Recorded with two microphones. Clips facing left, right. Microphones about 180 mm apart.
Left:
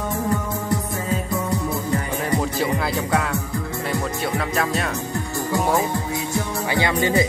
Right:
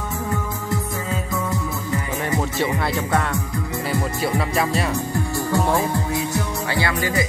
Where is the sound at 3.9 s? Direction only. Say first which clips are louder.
Right 2 dB; centre (ahead or behind).